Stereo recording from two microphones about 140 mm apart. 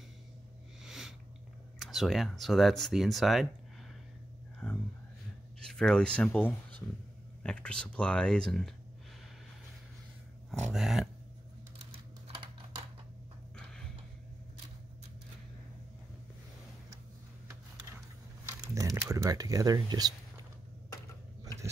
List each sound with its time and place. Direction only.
0.8 s sniff: 5° right (ahead or behind)
1.8 s speech: centre (ahead or behind)
4.6 s speech: 5° left (ahead or behind)
10.7 s speech: centre (ahead or behind)
18.8 s speech: 25° right (ahead or behind)